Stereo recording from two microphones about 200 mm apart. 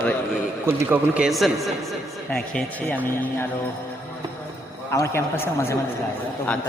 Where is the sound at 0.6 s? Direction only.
10° right (ahead or behind); by 3.4 s 10° left (ahead or behind).